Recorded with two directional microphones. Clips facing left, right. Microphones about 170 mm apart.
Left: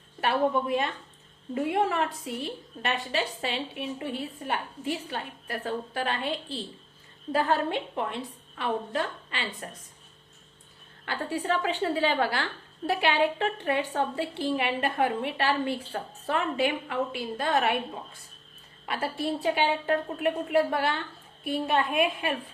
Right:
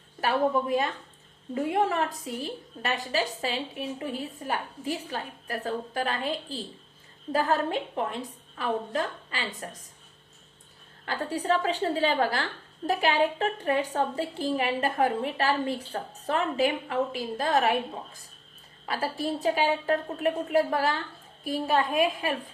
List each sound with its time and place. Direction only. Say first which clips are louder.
0.2 s a woman's voice: even; 35° right (ahead or behind)
11.0 s a woman's voice: right 1 dB; 40° right (ahead or behind)